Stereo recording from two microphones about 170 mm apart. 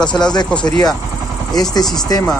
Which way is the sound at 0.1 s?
25° left (ahead or behind).